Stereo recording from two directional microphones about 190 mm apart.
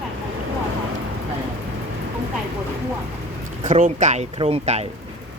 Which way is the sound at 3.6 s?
40° right (ahead or behind).